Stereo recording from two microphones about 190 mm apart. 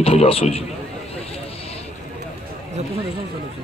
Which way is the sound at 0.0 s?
30° left (ahead or behind).